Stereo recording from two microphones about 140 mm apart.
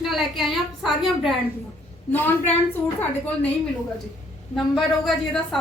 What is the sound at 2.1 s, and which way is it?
A woman's voice, 15° left (ahead or behind).